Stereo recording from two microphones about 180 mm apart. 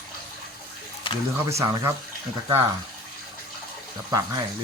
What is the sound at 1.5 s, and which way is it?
Speech, 15° right (ahead or behind).